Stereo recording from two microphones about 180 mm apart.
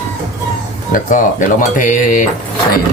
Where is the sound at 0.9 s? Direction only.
45° left (ahead or behind).